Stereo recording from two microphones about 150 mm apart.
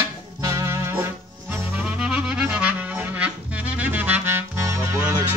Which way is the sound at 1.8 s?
10° right (ahead or behind).